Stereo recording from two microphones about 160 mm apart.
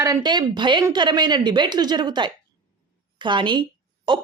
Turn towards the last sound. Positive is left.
turn(degrees=-30)  # may be behind; listen again after turning